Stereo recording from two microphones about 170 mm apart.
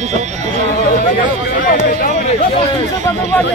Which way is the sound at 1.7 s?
55° left (ahead or behind).